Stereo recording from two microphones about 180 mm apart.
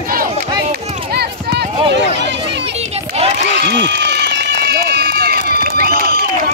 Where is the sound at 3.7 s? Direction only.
75° right (ahead or behind); by 6.5 s 55° right (ahead or behind).